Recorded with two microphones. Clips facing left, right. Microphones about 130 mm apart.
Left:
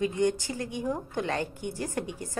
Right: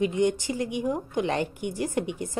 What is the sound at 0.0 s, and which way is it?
A woman's voice, 20° right (ahead or behind).